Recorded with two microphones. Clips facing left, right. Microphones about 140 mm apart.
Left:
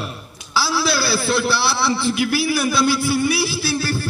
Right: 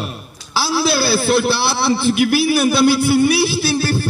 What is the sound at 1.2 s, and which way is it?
Speech, 55° right (ahead or behind).